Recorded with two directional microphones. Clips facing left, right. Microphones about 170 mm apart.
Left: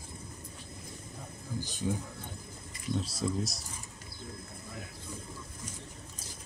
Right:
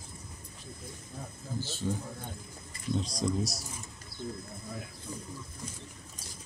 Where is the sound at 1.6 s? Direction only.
15° left (ahead or behind).